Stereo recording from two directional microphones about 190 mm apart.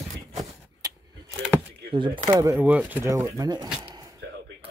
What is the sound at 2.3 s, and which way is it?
Speech, 15° right (ahead or behind).